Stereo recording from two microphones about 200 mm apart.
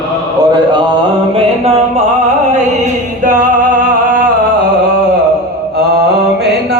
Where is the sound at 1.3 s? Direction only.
30° right (ahead or behind).